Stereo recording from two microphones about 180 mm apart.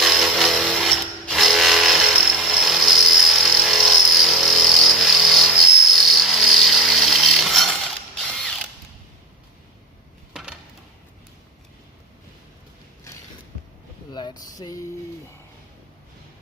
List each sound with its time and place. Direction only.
0.0 s ratchet: centre (ahead or behind)
8.3 s mechanisms: 5° left (ahead or behind)
14.1 s a sound: 25° left (ahead or behind)